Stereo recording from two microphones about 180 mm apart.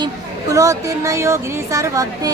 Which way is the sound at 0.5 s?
20° right (ahead or behind).